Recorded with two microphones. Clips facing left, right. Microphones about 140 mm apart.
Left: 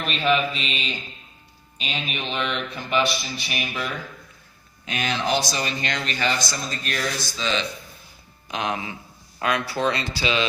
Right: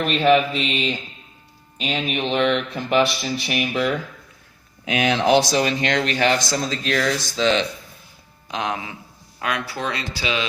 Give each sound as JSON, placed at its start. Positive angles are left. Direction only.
{"t": 0.3, "sound": "mantra", "side_deg": -65}
{"t": 1.8, "sound": "mantra", "side_deg": -60}
{"t": 2.3, "sound": "speech", "side_deg": -70}
{"t": 8.4, "sound": "speech", "side_deg": 15}
{"t": 9.4, "sound": "speech", "side_deg": -10}